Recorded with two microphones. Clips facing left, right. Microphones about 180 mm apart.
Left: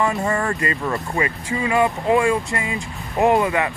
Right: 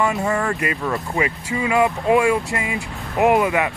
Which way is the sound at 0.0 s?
5° right (ahead or behind).